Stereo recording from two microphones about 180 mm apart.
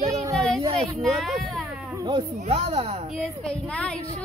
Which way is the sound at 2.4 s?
35° right (ahead or behind).